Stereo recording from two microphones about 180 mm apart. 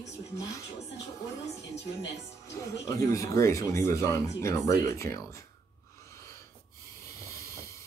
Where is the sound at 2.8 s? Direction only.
20° left (ahead or behind).